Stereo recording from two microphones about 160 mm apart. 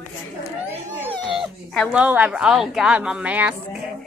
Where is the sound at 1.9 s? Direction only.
10° right (ahead or behind).